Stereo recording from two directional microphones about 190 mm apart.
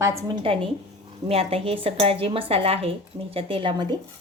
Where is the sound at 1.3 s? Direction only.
30° right (ahead or behind).